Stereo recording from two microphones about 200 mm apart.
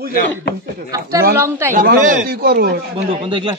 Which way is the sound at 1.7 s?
50° right (ahead or behind).